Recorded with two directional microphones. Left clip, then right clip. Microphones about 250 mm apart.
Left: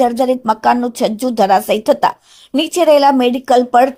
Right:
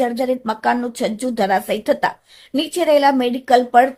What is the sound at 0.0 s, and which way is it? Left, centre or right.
A woman's voice, centre.